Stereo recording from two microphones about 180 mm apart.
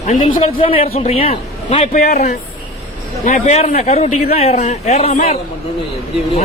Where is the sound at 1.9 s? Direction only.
45° left (ahead or behind).